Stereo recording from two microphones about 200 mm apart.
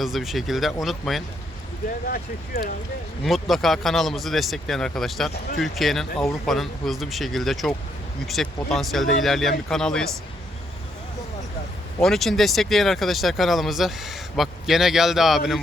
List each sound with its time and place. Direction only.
0.0 s speech: centre (ahead or behind)
2.0 s speech: 50° left (ahead or behind)
3.2 s speech: centre (ahead or behind)
11.9 s speech: centre (ahead or behind)